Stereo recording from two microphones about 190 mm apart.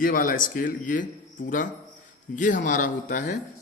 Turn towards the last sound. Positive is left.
turn(degrees=45)  # may be behind; listen again after turning